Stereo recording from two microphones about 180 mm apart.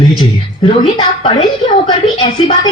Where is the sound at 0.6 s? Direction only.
25° left (ahead or behind).